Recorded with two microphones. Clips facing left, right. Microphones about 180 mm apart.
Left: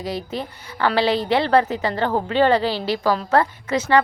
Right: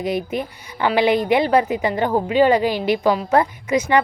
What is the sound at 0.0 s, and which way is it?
A woman's voice, 20° right (ahead or behind).